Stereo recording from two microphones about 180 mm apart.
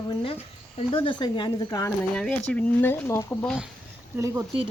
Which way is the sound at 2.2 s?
5° left (ahead or behind).